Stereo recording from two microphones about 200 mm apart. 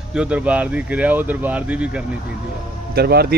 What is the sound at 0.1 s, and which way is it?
Speech, 5° right (ahead or behind).